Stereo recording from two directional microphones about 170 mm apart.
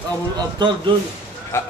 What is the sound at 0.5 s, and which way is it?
Speech, 25° right (ahead or behind).